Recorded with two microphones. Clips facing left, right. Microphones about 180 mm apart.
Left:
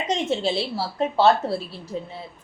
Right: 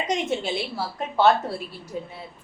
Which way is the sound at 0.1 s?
30° left (ahead or behind).